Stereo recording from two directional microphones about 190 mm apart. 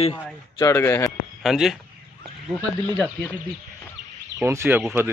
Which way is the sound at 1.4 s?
Centre (ahead or behind).